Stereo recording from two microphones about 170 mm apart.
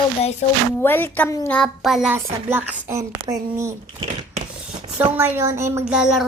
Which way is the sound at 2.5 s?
10° right (ahead or behind).